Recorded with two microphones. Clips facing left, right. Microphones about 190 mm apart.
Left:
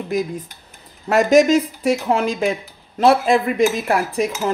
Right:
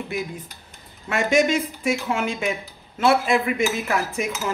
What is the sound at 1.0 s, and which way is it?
Cutlery, 40° left (ahead or behind).